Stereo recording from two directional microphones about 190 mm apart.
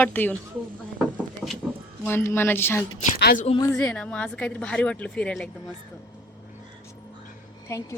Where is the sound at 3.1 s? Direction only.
55° left (ahead or behind).